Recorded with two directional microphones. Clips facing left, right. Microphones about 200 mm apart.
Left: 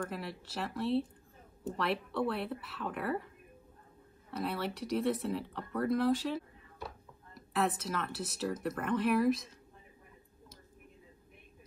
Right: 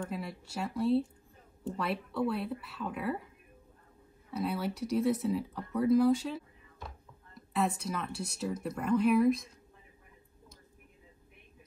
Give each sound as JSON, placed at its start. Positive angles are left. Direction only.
{"t": 0.1, "sound": "speech", "side_deg": 0}
{"t": 4.4, "sound": "speech", "side_deg": 0}
{"t": 7.5, "sound": "speech", "side_deg": 0}